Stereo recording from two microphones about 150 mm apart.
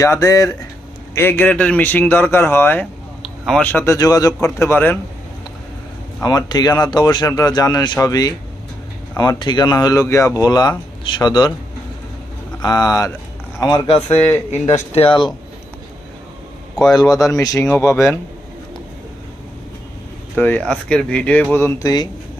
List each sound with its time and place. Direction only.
0.0 s a man's voice: 20° left (ahead or behind)
3.4 s speech: centre (ahead or behind)
3.7 s speech: 15° left (ahead or behind)
6.2 s speech: 25° left (ahead or behind)
12.6 s speech: 25° left (ahead or behind)
14.1 s a man's voice: 10° left (ahead or behind)
14.9 s speech: 35° left (ahead or behind)
16.9 s speech: 25° left (ahead or behind)
20.3 s a man's voice: 10° left (ahead or behind)
21.5 s speech: 20° left (ahead or behind)